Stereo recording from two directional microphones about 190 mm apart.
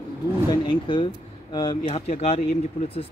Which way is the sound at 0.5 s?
25° left (ahead or behind).